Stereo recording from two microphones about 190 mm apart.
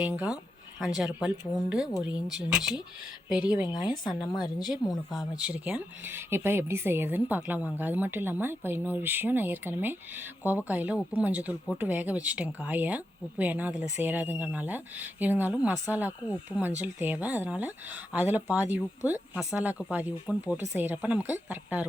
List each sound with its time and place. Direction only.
0.0 s speech: 10° right (ahead or behind)
2.1 s speech: 20° left (ahead or behind)
2.5 s speech: 5° right (ahead or behind)
3.7 s speech: 20° left (ahead or behind)
5.4 s speech: 5° right (ahead or behind)